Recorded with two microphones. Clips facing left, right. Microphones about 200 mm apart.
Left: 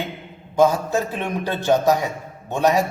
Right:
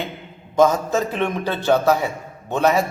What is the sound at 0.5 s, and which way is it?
A man's voice, 10° left (ahead or behind).